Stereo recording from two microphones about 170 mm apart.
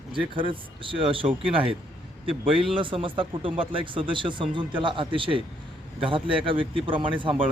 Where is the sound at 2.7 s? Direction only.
30° right (ahead or behind).